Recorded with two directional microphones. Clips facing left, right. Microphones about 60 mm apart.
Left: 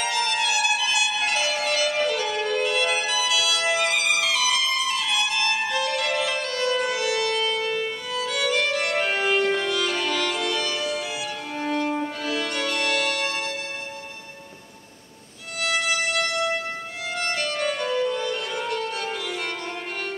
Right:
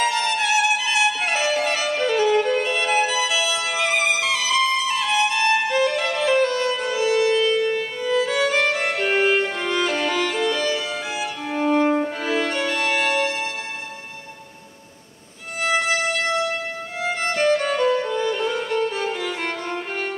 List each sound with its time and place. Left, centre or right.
0.0 s music: right
11.6 s violin: right
12.0 s music: right
15.6 s violin: right
17.0 s violin: right